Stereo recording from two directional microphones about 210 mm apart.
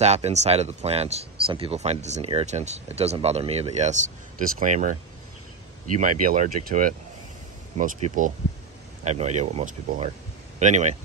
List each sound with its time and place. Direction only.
0.0 s speech: 30° right (ahead or behind)
5.9 s speech: 40° right (ahead or behind)